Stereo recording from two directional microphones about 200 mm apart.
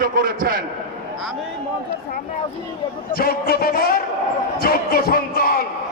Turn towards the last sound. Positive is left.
turn(degrees=50)  # may be behind; listen again after turning